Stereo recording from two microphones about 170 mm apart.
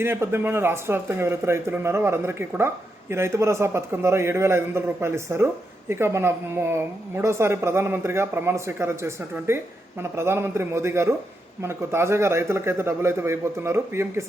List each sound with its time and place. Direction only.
0.0 s speech: 15° right (ahead or behind)